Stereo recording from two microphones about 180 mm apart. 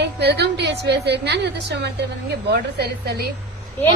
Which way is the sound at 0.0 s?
65° right (ahead or behind).